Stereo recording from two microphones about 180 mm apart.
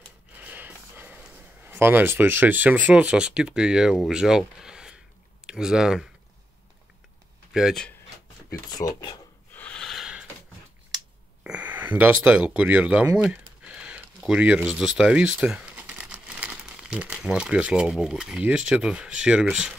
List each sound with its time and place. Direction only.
0.4 s speech: 10° right (ahead or behind)
7.5 s speech: centre (ahead or behind)
8.7 s speech: 20° left (ahead or behind)
9.5 s snort: 10° left (ahead or behind)
11.4 s speech: 10° right (ahead or behind)